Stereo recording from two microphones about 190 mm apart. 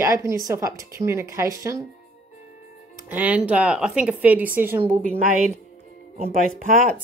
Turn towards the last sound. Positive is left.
turn(degrees=-40)  # may be behind; listen again after turning